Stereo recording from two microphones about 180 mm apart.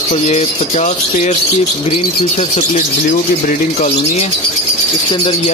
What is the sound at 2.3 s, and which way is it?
Speech, 40° left (ahead or behind).